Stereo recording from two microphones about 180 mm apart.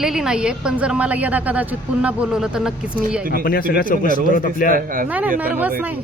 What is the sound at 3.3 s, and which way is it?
A man's voice, 55° left (ahead or behind).